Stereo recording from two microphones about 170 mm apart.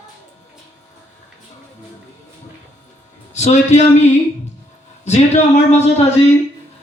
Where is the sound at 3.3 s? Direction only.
40° left (ahead or behind).